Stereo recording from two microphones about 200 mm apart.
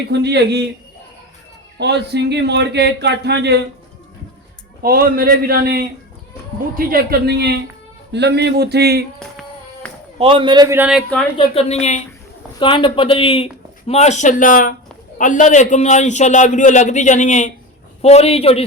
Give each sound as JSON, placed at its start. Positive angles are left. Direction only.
{"t": 0.1, "sound": "speech", "side_deg": -55}
{"t": 1.8, "sound": "speech", "side_deg": -55}
{"t": 4.8, "sound": "a man's voice", "side_deg": -50}
{"t": 10.2, "sound": "a man's voice", "side_deg": -25}
{"t": 11.3, "sound": "a man's voice", "side_deg": 30}
{"t": 12.5, "sound": "a man's voice", "side_deg": 25}